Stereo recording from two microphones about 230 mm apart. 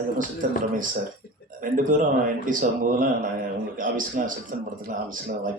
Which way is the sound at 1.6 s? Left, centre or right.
Right.